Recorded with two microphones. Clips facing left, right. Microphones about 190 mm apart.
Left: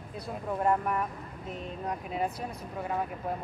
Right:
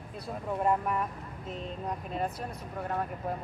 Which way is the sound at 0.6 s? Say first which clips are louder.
Left 1 dB; centre (ahead or behind).